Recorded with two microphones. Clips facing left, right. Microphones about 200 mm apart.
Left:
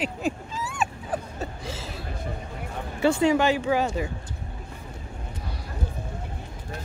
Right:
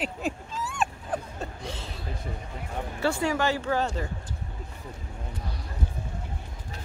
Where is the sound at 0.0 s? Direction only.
Centre (ahead or behind).